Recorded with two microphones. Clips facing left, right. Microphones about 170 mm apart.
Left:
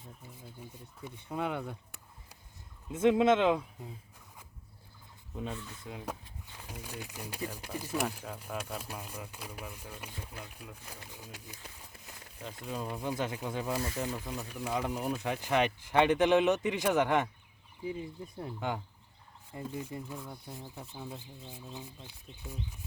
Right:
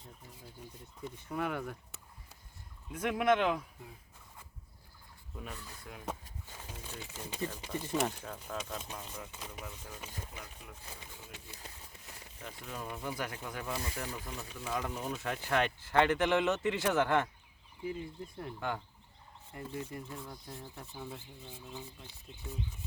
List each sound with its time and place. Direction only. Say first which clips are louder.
1.0 s speech: left 1 dB; 20° left (ahead or behind)
2.9 s speech: left 5 dB; 25° left (ahead or behind)
5.3 s speech: left 6 dB; 20° left (ahead or behind)
6.7 s speech: left 4 dB; 10° left (ahead or behind)
12.6 s speech: left 4 dB; 15° left (ahead or behind)